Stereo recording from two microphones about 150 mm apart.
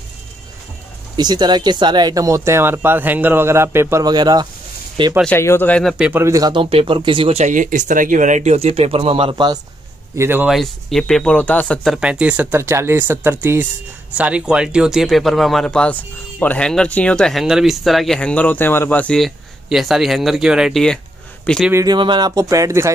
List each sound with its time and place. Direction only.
1.1 s speech: 25° right (ahead or behind)
5.2 s speech: 15° left (ahead or behind)
5.9 s speech: 10° right (ahead or behind)
6.2 s speech: 25° right (ahead or behind)
7.4 s speech: 60° right (ahead or behind); by 9.6 s 30° right (ahead or behind)
10.1 s speech: 15° right (ahead or behind)
10.4 s speech: centre (ahead or behind)
21.7 s speech: 30° right (ahead or behind)